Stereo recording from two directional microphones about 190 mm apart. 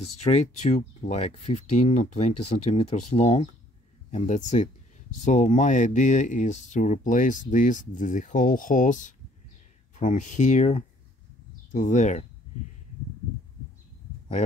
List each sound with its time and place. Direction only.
0.2 s speech: 35° left (ahead or behind)